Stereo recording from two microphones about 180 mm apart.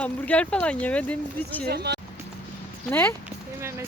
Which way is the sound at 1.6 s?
65° right (ahead or behind).